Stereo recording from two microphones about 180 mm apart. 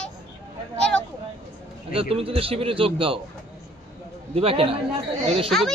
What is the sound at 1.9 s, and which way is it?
A man's voice, 30° right (ahead or behind).